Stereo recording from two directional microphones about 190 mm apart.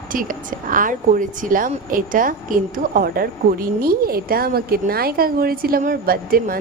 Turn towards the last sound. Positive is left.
turn(degrees=-50)  # may be behind; listen again after turning